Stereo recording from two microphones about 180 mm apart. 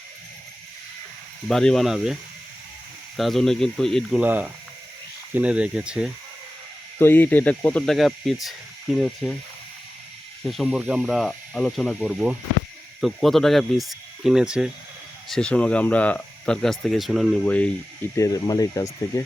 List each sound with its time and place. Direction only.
1.5 s speech: centre (ahead or behind)
3.2 s speech: centre (ahead or behind)
7.0 s speech: 10° left (ahead or behind)
10.5 s speech: centre (ahead or behind)
18.2 s speech: 20° left (ahead or behind)